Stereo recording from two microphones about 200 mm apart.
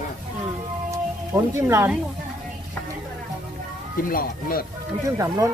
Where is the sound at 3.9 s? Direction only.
45° left (ahead or behind).